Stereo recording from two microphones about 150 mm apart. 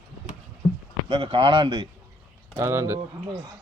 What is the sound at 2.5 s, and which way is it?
Speech, 20° right (ahead or behind).